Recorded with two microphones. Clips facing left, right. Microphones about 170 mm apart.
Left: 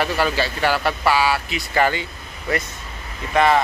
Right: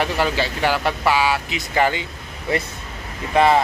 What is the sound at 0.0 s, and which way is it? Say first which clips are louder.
Speech: even; 15° right (ahead or behind).